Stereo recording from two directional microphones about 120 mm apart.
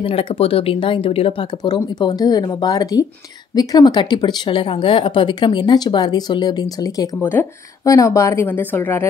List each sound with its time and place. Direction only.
0.0 s speech: 50° left (ahead or behind)
2.0 s speech: 35° left (ahead or behind)
7.2 s speech: 20° left (ahead or behind)